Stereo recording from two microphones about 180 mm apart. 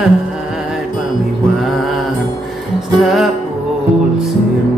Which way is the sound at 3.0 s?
Centre (ahead or behind).